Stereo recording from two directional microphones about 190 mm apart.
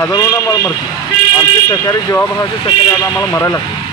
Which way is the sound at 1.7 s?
15° left (ahead or behind).